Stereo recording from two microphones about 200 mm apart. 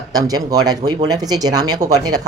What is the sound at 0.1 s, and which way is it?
Speech, 20° right (ahead or behind).